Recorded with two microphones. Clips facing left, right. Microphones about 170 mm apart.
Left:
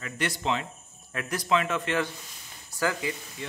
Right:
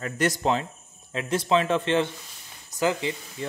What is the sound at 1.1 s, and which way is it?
Speech, 25° right (ahead or behind).